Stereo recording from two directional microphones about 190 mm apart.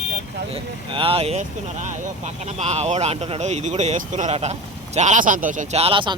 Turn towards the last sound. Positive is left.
turn(degrees=-30)  # may be behind; listen again after turning